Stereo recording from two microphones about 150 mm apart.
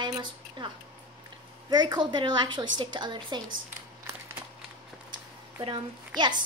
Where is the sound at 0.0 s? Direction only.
30° right (ahead or behind).